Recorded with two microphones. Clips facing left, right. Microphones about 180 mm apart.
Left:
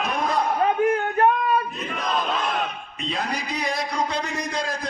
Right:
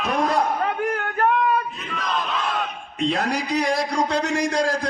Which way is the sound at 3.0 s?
75° right (ahead or behind).